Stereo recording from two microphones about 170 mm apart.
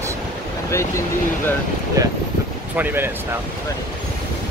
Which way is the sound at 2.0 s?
20° right (ahead or behind).